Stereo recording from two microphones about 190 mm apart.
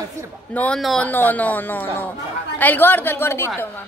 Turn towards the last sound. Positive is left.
turn(degrees=10)  # may be behind; listen again after turning